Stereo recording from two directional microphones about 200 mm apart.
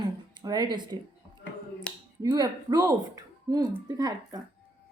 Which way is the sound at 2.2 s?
20° right (ahead or behind).